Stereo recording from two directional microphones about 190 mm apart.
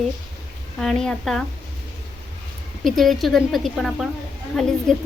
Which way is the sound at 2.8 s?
Centre (ahead or behind).